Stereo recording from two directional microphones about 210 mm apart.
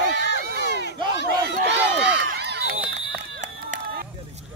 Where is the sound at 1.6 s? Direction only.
55° right (ahead or behind).